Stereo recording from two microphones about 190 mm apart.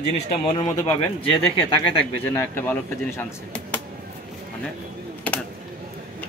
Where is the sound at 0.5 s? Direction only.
30° left (ahead or behind).